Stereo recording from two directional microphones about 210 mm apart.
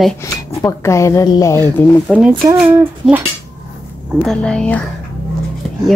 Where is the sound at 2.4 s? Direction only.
10° right (ahead or behind).